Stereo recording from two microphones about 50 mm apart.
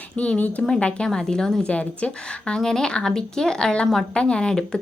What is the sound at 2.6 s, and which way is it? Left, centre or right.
Speech, centre.